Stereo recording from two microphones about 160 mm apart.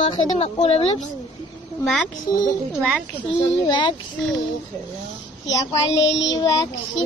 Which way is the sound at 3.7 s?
30° left (ahead or behind).